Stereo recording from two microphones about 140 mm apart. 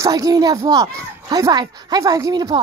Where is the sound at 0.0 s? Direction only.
25° right (ahead or behind).